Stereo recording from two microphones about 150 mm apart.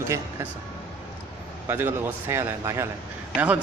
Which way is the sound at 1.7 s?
15° right (ahead or behind).